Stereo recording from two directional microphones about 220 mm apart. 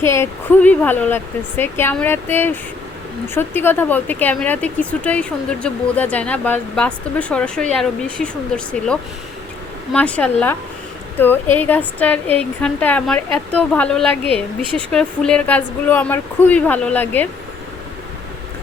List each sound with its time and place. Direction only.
0.0 s a woman's voice: 10° left (ahead or behind)
11.5 s a woman's voice: 10° left (ahead or behind)
14.3 s speech: 25° right (ahead or behind)
14.9 s speech: 5° left (ahead or behind)